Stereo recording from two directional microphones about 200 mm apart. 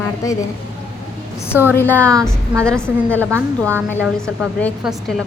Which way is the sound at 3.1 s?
10° right (ahead or behind).